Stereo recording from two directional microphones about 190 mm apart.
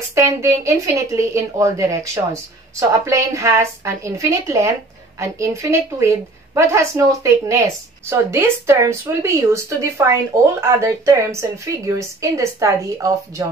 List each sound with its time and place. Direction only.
0.1 s a woman's voice: 15° right (ahead or behind)